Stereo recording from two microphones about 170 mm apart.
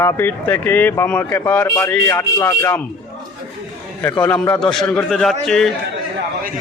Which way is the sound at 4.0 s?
10° left (ahead or behind).